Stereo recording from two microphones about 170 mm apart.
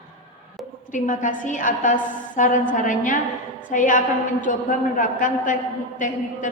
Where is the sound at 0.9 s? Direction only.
50° left (ahead or behind).